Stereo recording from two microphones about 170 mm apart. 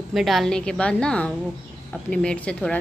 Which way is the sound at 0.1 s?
Centre (ahead or behind).